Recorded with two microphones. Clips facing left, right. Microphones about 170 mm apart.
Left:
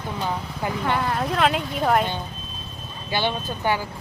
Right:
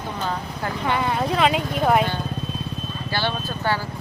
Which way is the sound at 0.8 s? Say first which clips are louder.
Right 2 dB; centre (ahead or behind).